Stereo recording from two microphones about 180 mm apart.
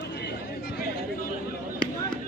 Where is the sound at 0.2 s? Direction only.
60° left (ahead or behind).